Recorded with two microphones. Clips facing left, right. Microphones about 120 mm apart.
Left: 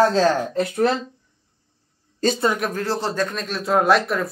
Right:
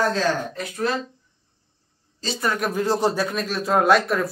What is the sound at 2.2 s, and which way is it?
Speech, 55° left (ahead or behind).